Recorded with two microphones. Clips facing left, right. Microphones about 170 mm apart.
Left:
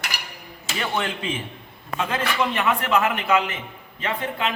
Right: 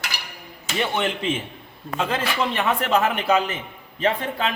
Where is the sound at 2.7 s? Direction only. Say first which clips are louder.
Right 2 dB; 35° right (ahead or behind).